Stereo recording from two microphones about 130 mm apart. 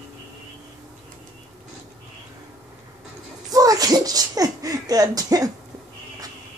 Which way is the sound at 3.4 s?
30° right (ahead or behind).